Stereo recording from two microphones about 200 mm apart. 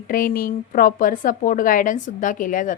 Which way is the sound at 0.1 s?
45° left (ahead or behind).